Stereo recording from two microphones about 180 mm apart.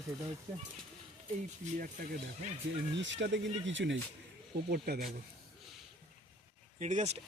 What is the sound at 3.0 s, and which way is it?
Speech, 90° right.